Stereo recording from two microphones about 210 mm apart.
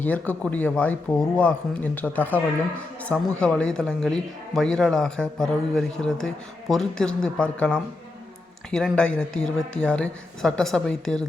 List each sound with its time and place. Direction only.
0.0 s a man's voice: 5° left (ahead or behind)